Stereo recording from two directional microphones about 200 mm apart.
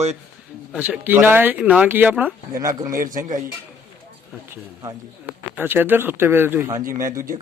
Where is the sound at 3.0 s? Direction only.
40° right (ahead or behind).